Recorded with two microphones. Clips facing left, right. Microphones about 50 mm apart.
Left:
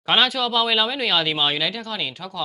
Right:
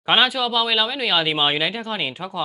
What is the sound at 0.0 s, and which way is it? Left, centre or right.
Speech, centre.